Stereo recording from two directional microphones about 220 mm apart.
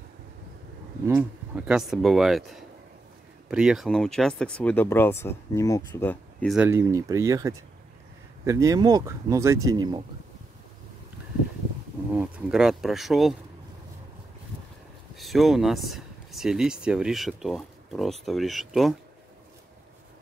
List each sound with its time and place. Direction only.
1.0 s speech: 5° right (ahead or behind); by 6.5 s 10° left (ahead or behind)
6.5 s speech: 10° right (ahead or behind)
12.1 s speech: 5° right (ahead or behind)
15.1 s speech: centre (ahead or behind)